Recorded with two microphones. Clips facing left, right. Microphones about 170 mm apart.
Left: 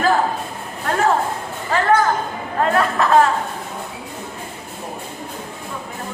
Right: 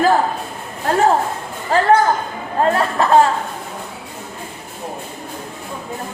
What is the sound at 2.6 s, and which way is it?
Chatter, 30° right (ahead or behind).